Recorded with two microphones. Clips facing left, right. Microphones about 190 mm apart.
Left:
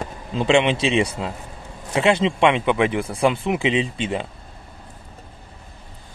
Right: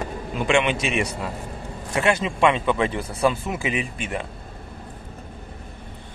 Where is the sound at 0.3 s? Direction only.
25° left (ahead or behind).